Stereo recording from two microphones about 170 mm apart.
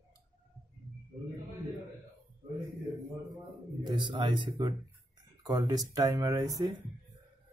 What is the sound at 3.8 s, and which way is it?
Speech, 25° right (ahead or behind).